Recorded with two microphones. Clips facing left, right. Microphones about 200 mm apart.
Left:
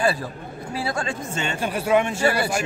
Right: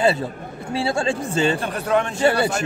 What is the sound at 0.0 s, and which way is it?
Speech, 25° right (ahead or behind).